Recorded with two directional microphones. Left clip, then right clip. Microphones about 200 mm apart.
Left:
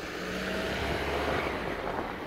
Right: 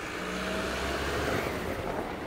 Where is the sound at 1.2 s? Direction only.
45° right (ahead or behind).